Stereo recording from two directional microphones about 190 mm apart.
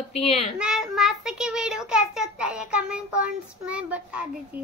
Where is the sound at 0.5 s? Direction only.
5° right (ahead or behind).